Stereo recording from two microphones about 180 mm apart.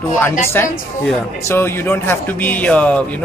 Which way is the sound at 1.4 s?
15° left (ahead or behind).